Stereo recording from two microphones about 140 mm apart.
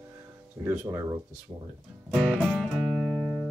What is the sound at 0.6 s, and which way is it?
Speech, 20° right (ahead or behind).